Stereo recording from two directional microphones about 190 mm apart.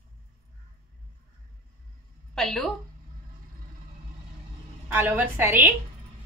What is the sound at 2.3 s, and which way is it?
Speech, centre (ahead or behind).